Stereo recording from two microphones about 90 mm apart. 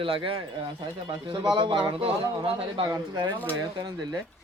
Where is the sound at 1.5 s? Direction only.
60° right (ahead or behind).